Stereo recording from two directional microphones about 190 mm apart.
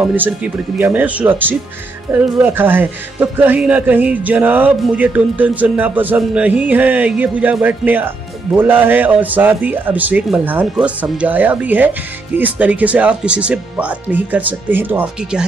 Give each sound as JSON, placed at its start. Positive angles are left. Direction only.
{"t": 0.0, "sound": "a man's voice", "side_deg": -10}